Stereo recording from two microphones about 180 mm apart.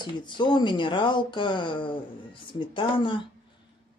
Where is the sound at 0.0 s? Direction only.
25° left (ahead or behind).